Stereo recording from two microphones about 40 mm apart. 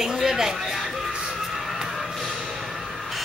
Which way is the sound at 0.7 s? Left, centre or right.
Centre.